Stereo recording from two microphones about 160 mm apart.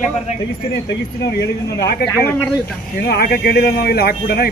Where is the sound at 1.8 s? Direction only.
80° left.